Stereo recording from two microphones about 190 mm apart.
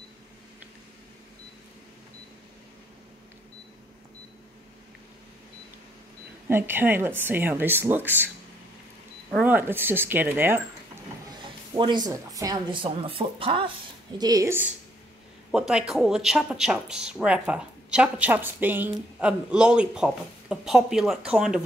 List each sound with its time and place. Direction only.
6.5 s speech: 10° right (ahead or behind)
9.3 s speech: 10° right (ahead or behind)
11.2 s speech: 20° right (ahead or behind)
15.5 s a woman's voice: 5° right (ahead or behind)